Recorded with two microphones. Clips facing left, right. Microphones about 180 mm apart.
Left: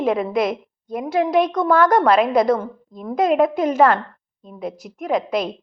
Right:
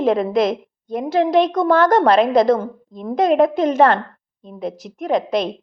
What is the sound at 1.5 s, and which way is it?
A woman's voice, 45° right (ahead or behind).